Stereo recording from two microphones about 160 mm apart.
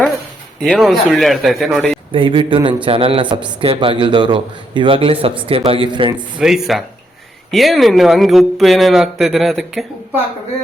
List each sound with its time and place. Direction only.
0.6 s speech: centre (ahead or behind)
2.1 s a man's voice: 30° right (ahead or behind)
6.3 s speech: 5° right (ahead or behind)